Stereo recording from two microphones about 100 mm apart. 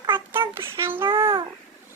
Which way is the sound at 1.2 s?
55° right (ahead or behind).